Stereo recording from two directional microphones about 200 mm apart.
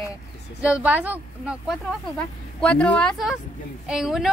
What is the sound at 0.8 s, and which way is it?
Speech, 10° right (ahead or behind).